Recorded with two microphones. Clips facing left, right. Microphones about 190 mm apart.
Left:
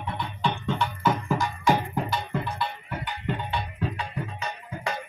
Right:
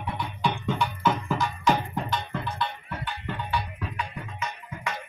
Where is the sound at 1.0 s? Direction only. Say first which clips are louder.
Left 1 dB; 15° left (ahead or behind).